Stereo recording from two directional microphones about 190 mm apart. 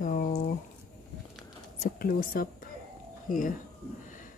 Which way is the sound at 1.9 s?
50° left (ahead or behind).